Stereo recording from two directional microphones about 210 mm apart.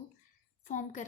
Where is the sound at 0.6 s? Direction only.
35° left (ahead or behind).